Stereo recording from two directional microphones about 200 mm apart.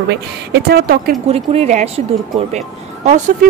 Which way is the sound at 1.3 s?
35° right (ahead or behind).